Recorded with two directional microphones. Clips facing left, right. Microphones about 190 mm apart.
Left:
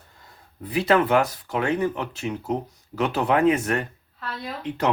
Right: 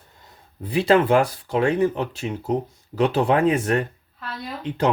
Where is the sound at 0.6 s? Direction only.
25° right (ahead or behind).